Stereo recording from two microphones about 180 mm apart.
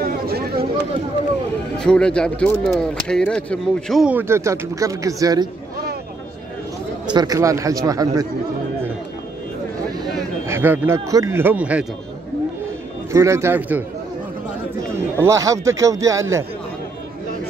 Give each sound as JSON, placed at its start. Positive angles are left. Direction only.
{"t": 0.0, "sound": "chatter", "side_deg": -60}
{"t": 1.8, "sound": "speech", "side_deg": 5}
{"t": 7.2, "sound": "a man's voice", "side_deg": -20}
{"t": 10.5, "sound": "a man's voice", "side_deg": -15}
{"t": 13.1, "sound": "a man's voice", "side_deg": -15}
{"t": 15.2, "sound": "a man's voice", "side_deg": -20}